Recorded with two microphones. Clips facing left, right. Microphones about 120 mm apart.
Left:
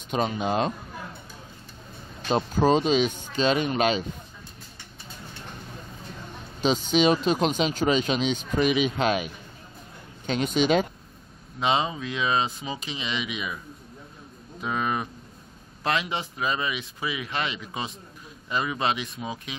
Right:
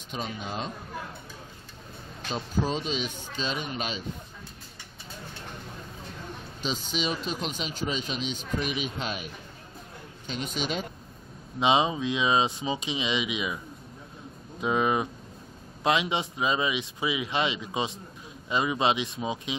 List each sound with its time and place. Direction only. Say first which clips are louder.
0.1 s speech: left 9 dB; 75° left (ahead or behind)
2.2 s speech: left 8 dB; 70° left (ahead or behind)
6.6 s speech: left 10 dB; 70° left (ahead or behind); by 9.3 s 90° left
10.2 s speech: left 9 dB; 80° left
11.6 s speech: right 2 dB; 15° right (ahead or behind)
14.6 s speech: right 3 dB; 15° right (ahead or behind)